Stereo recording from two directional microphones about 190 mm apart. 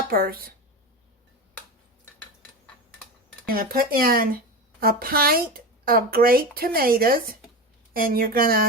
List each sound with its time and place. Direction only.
0.1 s speech: 50° right (ahead or behind)
3.4 s speech: 50° right (ahead or behind)